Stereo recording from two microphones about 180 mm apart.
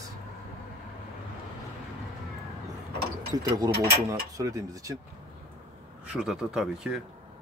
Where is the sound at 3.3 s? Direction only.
20° right (ahead or behind).